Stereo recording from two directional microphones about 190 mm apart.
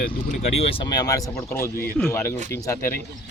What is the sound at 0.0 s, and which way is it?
Speech, 35° left (ahead or behind).